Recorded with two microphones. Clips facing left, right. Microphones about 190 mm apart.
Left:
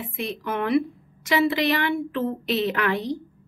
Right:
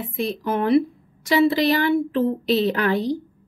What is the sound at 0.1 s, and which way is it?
Speech, 35° right (ahead or behind).